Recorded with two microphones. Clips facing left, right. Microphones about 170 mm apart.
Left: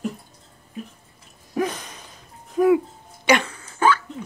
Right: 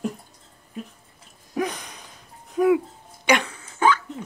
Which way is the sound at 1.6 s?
15° right (ahead or behind).